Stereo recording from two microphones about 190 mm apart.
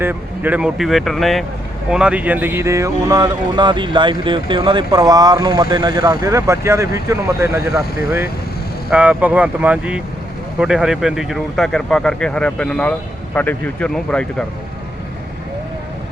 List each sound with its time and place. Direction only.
0.0 s speech: 10° right (ahead or behind)
8.9 s speech: 5° right (ahead or behind)